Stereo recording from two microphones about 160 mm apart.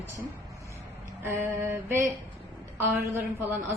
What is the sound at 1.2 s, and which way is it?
A woman's voice, 10° right (ahead or behind).